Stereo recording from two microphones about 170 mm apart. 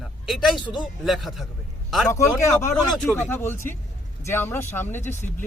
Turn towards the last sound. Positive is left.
turn(degrees=15)  # may be behind; listen again after turning